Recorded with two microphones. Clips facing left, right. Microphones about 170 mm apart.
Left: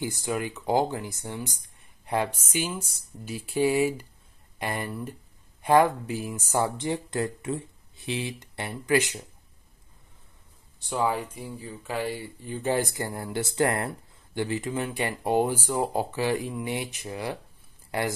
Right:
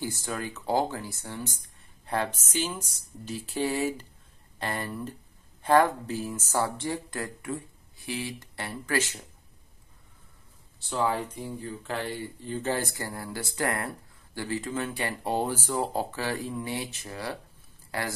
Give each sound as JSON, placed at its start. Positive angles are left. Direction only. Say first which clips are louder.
{"t": 0.0, "sound": "speech", "louder": "left 4 dB", "side_deg": 15}
{"t": 10.9, "sound": "speech", "louder": "left 1 dB", "side_deg": 10}